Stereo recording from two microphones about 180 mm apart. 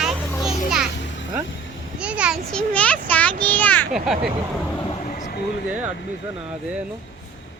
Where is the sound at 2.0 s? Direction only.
5° right (ahead or behind).